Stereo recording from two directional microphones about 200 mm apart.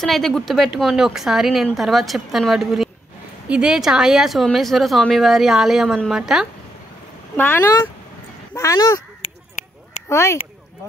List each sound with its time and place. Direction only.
0.0 s speech: centre (ahead or behind)
7.3 s speech: 10° left (ahead or behind)